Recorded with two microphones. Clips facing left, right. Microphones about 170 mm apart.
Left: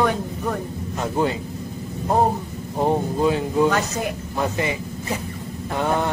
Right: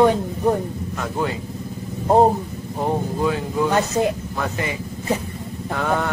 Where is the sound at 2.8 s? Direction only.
25° left (ahead or behind).